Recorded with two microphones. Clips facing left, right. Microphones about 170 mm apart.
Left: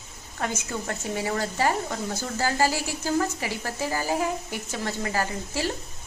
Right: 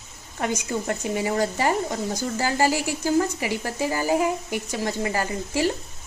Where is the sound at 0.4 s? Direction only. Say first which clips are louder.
Right 4 dB; 15° right (ahead or behind).